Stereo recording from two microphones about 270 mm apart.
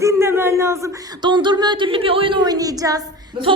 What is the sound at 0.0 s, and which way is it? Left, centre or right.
Speech, centre.